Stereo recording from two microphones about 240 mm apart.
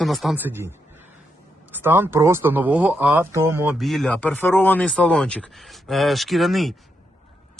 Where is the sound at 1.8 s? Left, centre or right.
Centre.